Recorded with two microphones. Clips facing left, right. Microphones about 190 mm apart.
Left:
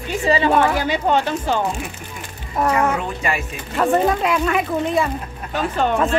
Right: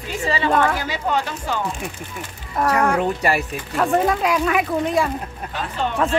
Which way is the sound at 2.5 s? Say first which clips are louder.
Even; 5° left (ahead or behind).